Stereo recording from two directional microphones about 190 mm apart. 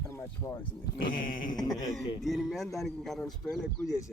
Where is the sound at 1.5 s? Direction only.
Centre (ahead or behind).